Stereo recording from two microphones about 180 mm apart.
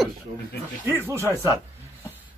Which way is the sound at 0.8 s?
15° right (ahead or behind).